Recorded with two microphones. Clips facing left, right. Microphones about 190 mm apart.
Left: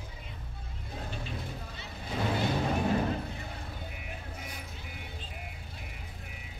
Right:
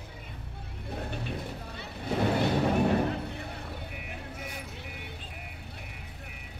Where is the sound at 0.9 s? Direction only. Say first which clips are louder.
Right 4 dB; 60° right (ahead or behind).